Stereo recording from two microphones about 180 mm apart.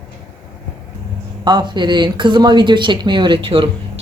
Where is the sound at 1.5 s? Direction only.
25° right (ahead or behind).